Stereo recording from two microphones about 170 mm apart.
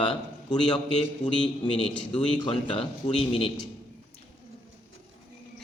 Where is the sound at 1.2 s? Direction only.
45° left (ahead or behind).